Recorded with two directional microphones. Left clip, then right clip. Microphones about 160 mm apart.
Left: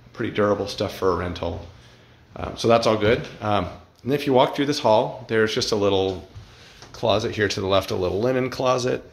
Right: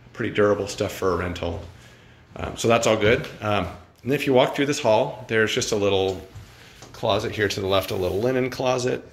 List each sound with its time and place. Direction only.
0.1 s speech: 20° left (ahead or behind)
2.6 s speech: 25° left (ahead or behind)